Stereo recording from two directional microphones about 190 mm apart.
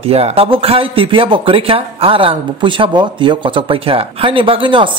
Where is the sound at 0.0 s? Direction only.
30° right (ahead or behind).